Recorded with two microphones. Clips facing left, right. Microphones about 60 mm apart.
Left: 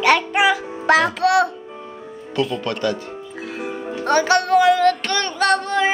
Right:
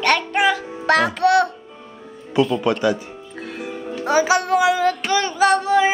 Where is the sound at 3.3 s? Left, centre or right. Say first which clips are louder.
Even; centre.